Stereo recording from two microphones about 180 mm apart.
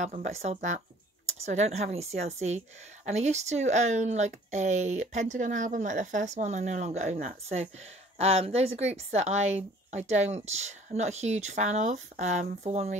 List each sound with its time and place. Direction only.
0.0 s speech: 40° right (ahead or behind)